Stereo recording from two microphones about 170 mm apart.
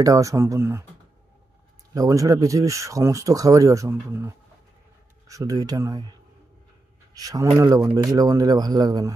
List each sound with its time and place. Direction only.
0.0 s speech: 20° right (ahead or behind)
2.0 s speech: 20° right (ahead or behind)
7.2 s speech: 20° right (ahead or behind)